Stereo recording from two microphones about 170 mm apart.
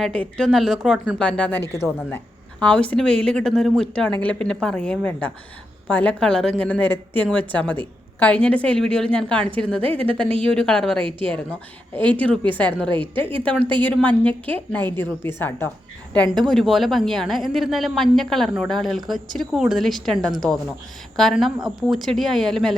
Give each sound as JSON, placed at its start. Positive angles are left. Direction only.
{"t": 0.0, "sound": "a woman's voice", "side_deg": 5}
{"t": 9.7, "sound": "a woman's voice", "side_deg": -30}
{"t": 10.2, "sound": "speech", "side_deg": 5}
{"t": 12.1, "sound": "a woman's voice", "side_deg": 10}